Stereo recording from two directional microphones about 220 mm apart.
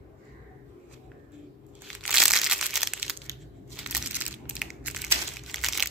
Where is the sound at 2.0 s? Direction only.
Centre (ahead or behind).